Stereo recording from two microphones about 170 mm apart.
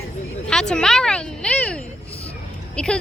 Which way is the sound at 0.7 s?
5° left (ahead or behind).